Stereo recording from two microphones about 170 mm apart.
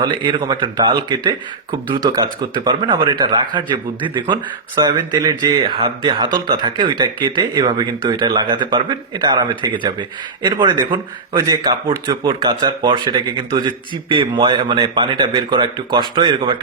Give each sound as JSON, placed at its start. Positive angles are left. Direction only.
{"t": 0.0, "sound": "a man's voice", "side_deg": -25}